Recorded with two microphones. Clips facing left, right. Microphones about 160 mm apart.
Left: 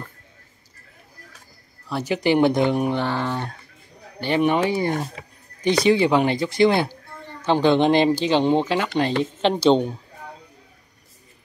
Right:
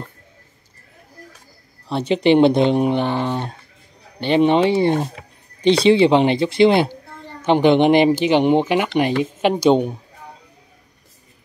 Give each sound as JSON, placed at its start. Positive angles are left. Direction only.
{"t": 1.9, "sound": "speech", "side_deg": -25}